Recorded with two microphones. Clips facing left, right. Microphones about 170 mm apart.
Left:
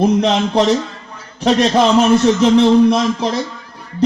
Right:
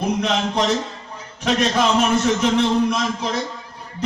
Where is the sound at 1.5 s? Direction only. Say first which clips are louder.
Left 6 dB; 35° left (ahead or behind).